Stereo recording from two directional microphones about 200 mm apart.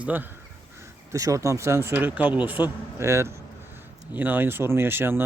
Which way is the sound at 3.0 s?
15° right (ahead or behind).